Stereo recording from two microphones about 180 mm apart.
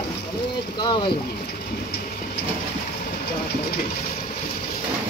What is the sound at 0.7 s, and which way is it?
Speech, 25° left (ahead or behind).